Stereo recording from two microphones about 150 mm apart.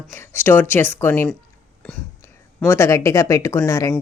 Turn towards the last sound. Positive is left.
turn(degrees=20)  # may be behind; listen again after turning